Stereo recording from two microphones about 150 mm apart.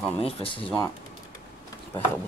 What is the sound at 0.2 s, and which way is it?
Speech, 40° left (ahead or behind).